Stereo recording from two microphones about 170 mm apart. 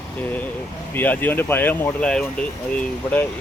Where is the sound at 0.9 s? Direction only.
10° left (ahead or behind).